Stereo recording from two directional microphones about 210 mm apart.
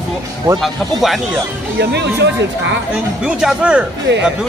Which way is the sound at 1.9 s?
55° right (ahead or behind).